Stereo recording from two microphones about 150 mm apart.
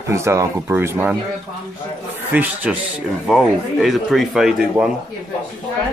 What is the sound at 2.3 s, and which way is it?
Speech, 10° right (ahead or behind).